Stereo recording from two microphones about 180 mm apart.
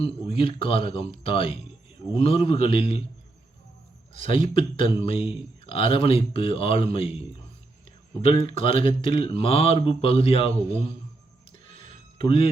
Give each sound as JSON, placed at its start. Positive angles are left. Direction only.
{"t": 0.4, "sound": "speech", "side_deg": 30}
{"t": 4.1, "sound": "speech", "side_deg": 30}
{"t": 8.2, "sound": "speech", "side_deg": 30}
{"t": 12.2, "sound": "speech", "side_deg": 30}